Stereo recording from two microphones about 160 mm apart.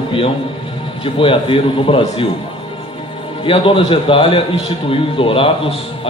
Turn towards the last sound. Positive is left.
turn(degrees=35)  # may be behind; listen again after turning